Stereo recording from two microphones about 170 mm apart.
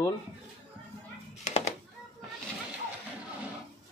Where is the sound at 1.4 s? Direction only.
40° left (ahead or behind).